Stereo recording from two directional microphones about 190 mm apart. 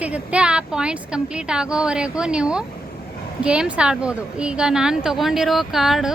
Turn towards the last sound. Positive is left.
turn(degrees=0)  # may be behind; listen again after turning